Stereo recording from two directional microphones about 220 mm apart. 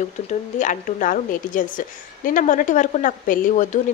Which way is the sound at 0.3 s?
35° left (ahead or behind).